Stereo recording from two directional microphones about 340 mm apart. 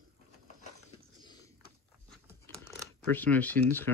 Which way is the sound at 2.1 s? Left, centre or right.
Centre.